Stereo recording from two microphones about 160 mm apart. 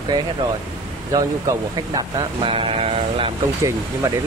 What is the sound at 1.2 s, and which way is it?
Speech, 20° right (ahead or behind).